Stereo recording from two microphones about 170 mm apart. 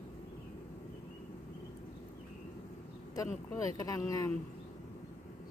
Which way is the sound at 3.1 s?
20° left (ahead or behind).